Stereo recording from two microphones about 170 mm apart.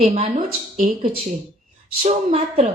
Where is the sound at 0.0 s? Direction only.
40° right (ahead or behind).